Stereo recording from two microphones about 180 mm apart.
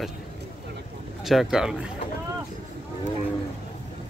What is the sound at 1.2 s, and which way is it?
Speech, centre (ahead or behind).